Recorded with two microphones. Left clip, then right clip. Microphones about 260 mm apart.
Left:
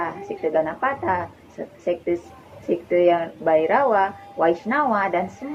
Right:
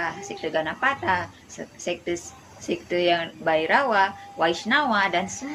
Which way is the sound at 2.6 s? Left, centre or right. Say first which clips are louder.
Left 5 dB; right.